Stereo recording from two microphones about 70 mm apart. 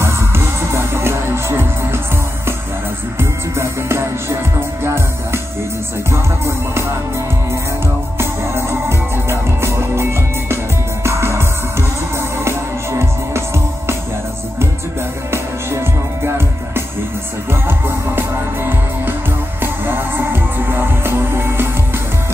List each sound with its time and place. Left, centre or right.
0.0 s music: right
3.2 s music: right
8.2 s music: right
11.1 s music: right
15.3 s music: right